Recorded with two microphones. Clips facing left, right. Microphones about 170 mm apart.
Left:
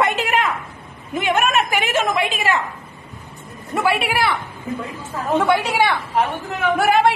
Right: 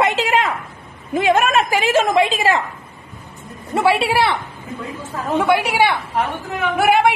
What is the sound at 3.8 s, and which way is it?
Speech, 30° right (ahead or behind).